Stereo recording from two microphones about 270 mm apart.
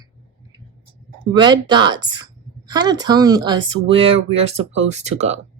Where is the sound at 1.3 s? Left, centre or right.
Centre.